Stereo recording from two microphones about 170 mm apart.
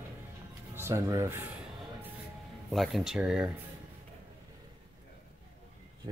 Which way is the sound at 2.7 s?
Centre (ahead or behind).